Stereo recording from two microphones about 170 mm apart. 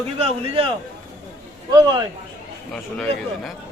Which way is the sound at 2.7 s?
5° left (ahead or behind).